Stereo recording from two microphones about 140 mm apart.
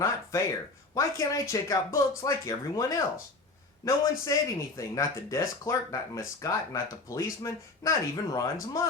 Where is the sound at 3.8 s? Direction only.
20° left (ahead or behind).